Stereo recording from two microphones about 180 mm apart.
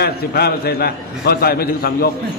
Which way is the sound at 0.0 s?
60° left (ahead or behind).